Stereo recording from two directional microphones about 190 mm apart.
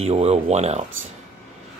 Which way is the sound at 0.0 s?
35° right (ahead or behind).